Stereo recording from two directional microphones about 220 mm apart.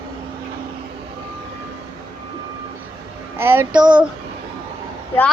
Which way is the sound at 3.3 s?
10° right (ahead or behind).